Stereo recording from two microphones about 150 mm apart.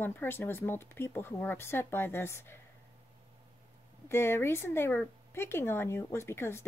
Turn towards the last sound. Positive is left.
turn(degrees=15)  # may be behind; listen again after turning